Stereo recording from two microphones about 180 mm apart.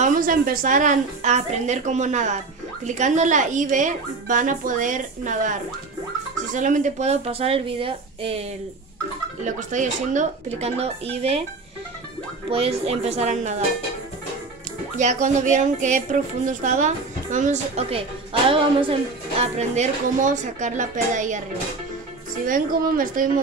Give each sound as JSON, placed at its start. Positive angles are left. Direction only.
{"t": 0.0, "sound": "a woman's voice", "side_deg": -50}
{"t": 9.4, "sound": "speech", "side_deg": -45}
{"t": 12.4, "sound": "speech", "side_deg": -35}
{"t": 15.0, "sound": "a woman's voice", "side_deg": -40}
{"t": 22.5, "sound": "a woman's voice", "side_deg": -50}